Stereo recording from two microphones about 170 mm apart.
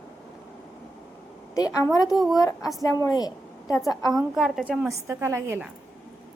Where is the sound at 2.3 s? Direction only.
20° left (ahead or behind).